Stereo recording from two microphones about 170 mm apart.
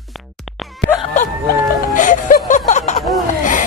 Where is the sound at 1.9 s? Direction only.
50° left (ahead or behind).